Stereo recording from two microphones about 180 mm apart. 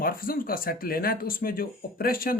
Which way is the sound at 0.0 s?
55° left (ahead or behind).